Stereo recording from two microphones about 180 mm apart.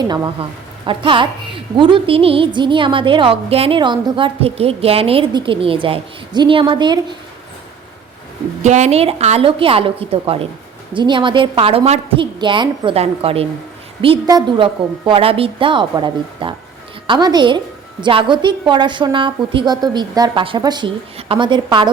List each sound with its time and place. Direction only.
0.0 s a woman's voice: 25° right (ahead or behind)
8.6 s a woman's voice: 40° right (ahead or behind)